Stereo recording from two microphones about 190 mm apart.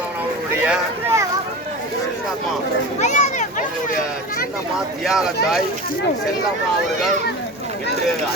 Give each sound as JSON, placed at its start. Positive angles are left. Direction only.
{"t": 0.6, "sound": "boat", "side_deg": -10}
{"t": 3.0, "sound": "a sound", "side_deg": 40}
{"t": 5.0, "sound": "speech", "side_deg": 0}